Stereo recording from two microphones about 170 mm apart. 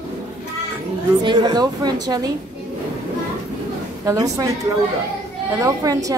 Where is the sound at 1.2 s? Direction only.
25° right (ahead or behind).